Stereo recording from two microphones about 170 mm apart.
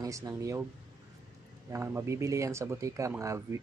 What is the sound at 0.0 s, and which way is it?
Speech, 20° right (ahead or behind).